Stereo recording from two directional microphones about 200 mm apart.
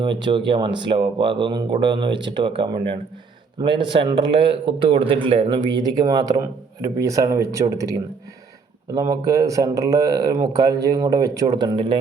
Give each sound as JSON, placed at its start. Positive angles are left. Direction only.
{"t": 0.0, "sound": "speech", "side_deg": -25}